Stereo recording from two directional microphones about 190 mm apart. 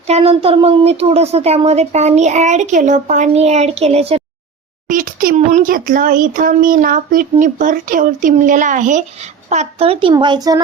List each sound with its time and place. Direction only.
0.1 s speech: 30° right (ahead or behind)
4.9 s a child's voice: 45° right (ahead or behind); by 10.6 s 20° right (ahead or behind)